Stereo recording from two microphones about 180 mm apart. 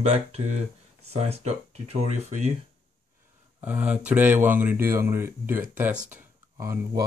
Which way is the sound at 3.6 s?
10° right (ahead or behind).